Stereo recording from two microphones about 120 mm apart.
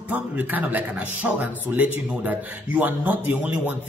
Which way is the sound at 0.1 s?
15° right (ahead or behind).